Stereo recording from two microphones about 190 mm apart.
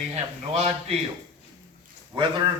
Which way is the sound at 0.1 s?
35° right (ahead or behind).